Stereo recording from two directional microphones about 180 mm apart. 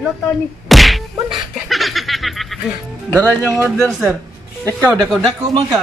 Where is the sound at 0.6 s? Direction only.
Centre (ahead or behind).